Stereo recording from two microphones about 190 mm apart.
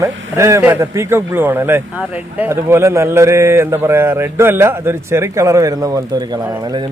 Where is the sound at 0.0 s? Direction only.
15° right (ahead or behind).